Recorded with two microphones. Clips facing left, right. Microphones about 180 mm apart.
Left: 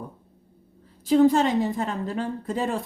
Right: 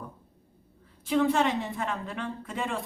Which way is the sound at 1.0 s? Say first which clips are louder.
Left 6 dB; 35° left (ahead or behind).